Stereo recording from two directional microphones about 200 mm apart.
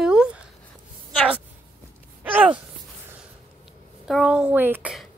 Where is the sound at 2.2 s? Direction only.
10° right (ahead or behind).